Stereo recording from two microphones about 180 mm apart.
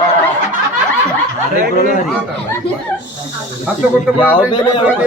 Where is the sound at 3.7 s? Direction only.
10° right (ahead or behind).